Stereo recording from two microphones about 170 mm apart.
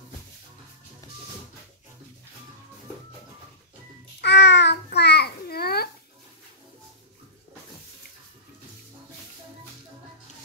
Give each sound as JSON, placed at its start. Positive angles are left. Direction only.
{"t": 4.2, "sound": "babbling", "side_deg": 90}